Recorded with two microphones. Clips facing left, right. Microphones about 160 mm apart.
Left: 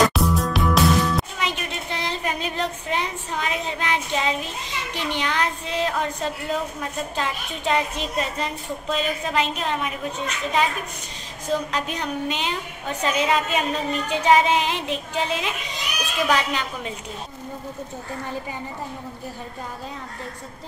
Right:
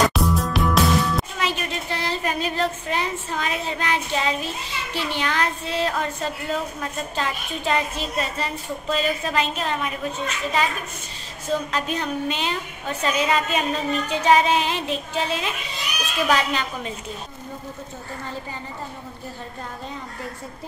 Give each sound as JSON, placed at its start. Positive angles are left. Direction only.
{"t": 0.0, "sound": "music", "side_deg": 0}
{"t": 1.5, "sound": "a woman's voice", "side_deg": 20}